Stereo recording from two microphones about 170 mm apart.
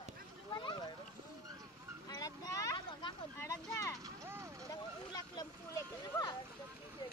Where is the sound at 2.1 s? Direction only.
20° left (ahead or behind).